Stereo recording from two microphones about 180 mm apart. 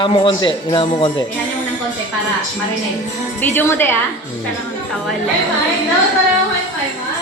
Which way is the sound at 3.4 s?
10° left (ahead or behind).